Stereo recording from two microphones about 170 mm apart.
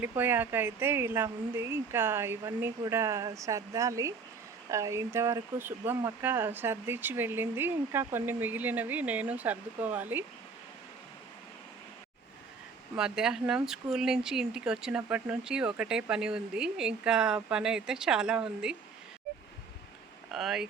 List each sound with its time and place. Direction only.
0.2 s speech: 10° right (ahead or behind)
13.0 s speech: 5° right (ahead or behind)
20.3 s speech: centre (ahead or behind)